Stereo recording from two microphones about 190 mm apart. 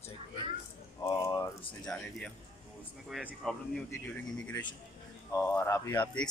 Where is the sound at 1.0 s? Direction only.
15° left (ahead or behind).